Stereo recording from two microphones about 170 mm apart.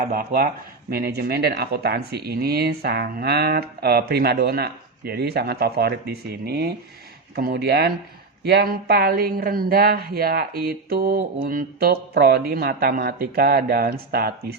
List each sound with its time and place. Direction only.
0.0 s speech: 55° right (ahead or behind)